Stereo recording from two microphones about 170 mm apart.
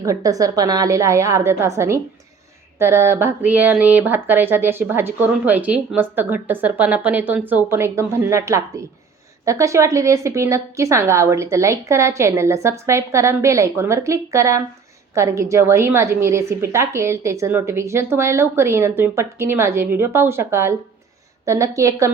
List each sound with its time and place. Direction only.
0.0 s a woman's voice: 20° right (ahead or behind)